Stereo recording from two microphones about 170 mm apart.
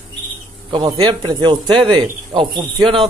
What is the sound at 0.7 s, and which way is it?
A man's voice, 30° right (ahead or behind).